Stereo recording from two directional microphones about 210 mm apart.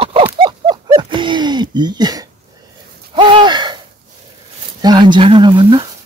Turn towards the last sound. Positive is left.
turn(degrees=-20)  # may be behind; listen again after turning